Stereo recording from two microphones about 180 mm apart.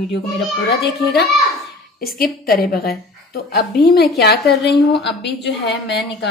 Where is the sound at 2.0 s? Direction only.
55° left (ahead or behind).